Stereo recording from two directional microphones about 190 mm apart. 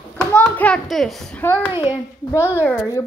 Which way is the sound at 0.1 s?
10° left (ahead or behind).